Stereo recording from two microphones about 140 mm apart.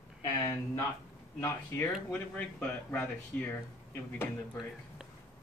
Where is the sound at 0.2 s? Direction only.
25° left (ahead or behind).